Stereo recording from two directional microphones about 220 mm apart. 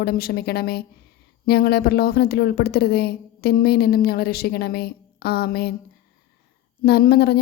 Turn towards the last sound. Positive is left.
turn(degrees=45)  # may be behind; listen again after turning